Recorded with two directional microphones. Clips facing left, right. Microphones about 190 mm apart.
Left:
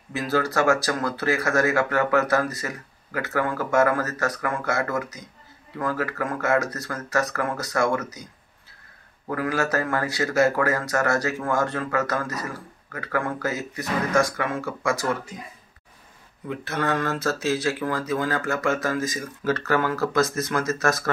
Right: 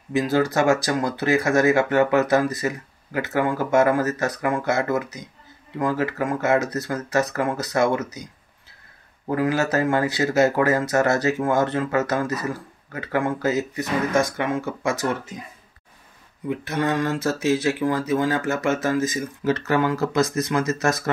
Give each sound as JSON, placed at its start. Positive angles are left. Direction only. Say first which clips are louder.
{"t": 0.1, "sound": "speech", "louder": "right 4 dB", "side_deg": -15}
{"t": 9.3, "sound": "speech", "louder": "right 3 dB", "side_deg": -20}
{"t": 16.4, "sound": "speech", "louder": "right 3 dB", "side_deg": -15}